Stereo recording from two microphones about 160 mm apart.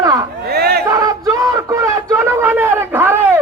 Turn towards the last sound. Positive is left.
turn(degrees=-15)  # may be behind; listen again after turning